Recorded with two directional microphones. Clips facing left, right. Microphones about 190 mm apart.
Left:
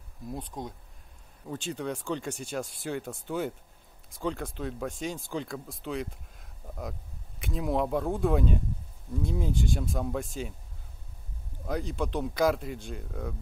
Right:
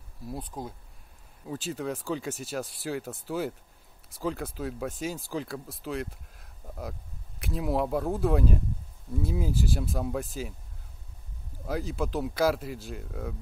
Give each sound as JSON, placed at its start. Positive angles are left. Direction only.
{"t": 0.3, "sound": "speech", "side_deg": -5}
{"t": 11.6, "sound": "speech", "side_deg": -5}